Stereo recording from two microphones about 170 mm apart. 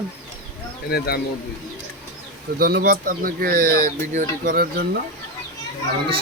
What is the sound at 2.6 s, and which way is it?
Speech, 60° right (ahead or behind).